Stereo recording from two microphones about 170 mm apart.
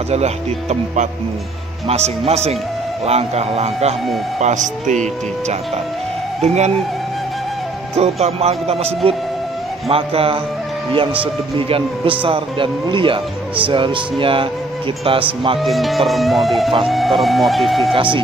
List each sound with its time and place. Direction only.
0.1 s a man's voice: 40° right (ahead or behind)
6.4 s speech: 40° right (ahead or behind)
8.0 s speech: 40° right (ahead or behind)
15.6 s speech: centre (ahead or behind)